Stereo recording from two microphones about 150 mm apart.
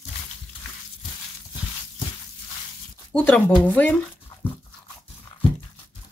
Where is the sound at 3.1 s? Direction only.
5° left (ahead or behind).